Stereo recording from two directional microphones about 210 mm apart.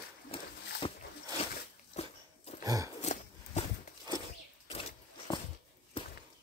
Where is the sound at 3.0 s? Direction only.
35° left (ahead or behind).